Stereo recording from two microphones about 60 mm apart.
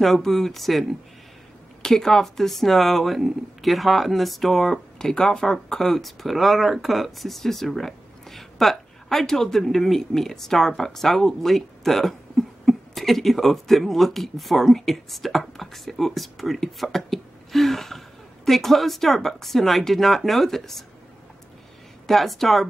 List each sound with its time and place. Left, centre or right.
0.0 s speech: centre
22.0 s speech: centre